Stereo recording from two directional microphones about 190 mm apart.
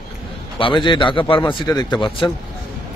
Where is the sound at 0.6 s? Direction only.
25° left (ahead or behind).